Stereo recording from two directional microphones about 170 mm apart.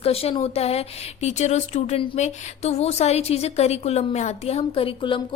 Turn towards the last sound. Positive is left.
turn(degrees=30)  # may be behind; listen again after turning